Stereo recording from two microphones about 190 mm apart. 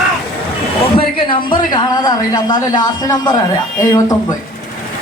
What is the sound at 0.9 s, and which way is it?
A man's voice, 25° left (ahead or behind).